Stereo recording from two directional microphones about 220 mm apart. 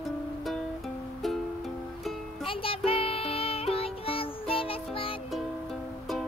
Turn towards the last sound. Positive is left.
turn(degrees=25)  # may be behind; listen again after turning